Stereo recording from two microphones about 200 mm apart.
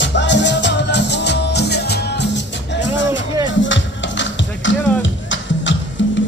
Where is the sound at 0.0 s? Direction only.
60° left (ahead or behind).